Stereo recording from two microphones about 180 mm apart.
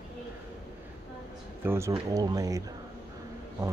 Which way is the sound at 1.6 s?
15° right (ahead or behind).